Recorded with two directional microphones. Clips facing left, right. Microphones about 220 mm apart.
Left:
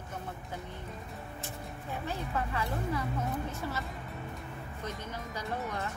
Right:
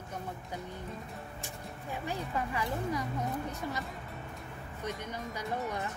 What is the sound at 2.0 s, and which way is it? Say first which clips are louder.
Speech: even; 15° right (ahead or behind).